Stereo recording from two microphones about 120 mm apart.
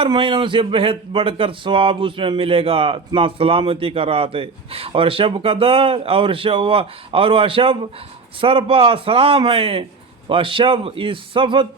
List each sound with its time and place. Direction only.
0.0 s a man's voice: 45° right (ahead or behind)